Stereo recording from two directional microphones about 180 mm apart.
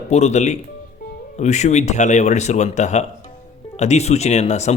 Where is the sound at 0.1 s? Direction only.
40° left (ahead or behind).